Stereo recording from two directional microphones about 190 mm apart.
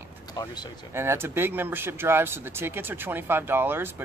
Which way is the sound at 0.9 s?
15° right (ahead or behind).